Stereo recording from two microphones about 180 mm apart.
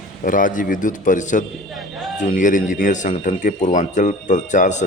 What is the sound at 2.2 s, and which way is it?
Speech, 45° left (ahead or behind).